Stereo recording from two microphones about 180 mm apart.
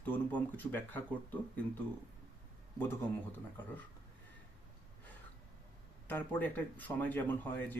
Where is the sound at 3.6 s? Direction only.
10° left (ahead or behind).